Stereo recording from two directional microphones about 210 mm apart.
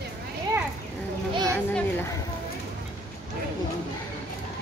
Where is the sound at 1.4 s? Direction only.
5° left (ahead or behind).